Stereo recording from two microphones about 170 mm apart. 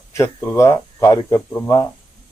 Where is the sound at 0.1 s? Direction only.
20° left (ahead or behind).